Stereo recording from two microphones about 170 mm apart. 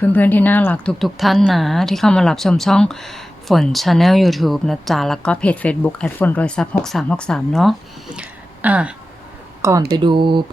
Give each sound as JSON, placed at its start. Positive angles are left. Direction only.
{"t": 0.0, "sound": "speech", "side_deg": 10}
{"t": 10.0, "sound": "speech", "side_deg": -30}